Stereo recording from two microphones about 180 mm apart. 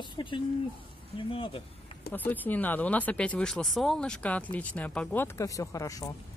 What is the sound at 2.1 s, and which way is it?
Speech, 10° left (ahead or behind).